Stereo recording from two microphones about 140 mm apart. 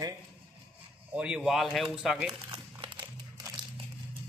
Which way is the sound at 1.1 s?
5° right (ahead or behind).